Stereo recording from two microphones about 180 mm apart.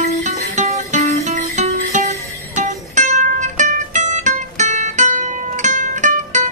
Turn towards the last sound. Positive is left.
turn(degrees=-40)  # may be behind; listen again after turning